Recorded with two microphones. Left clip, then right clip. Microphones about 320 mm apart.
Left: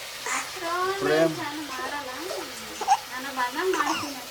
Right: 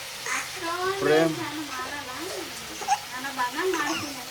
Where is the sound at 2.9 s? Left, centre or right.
Left.